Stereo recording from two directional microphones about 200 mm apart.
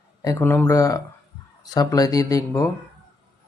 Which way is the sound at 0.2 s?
15° left (ahead or behind).